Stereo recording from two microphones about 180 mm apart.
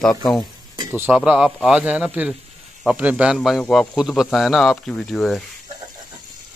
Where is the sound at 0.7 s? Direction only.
10° right (ahead or behind).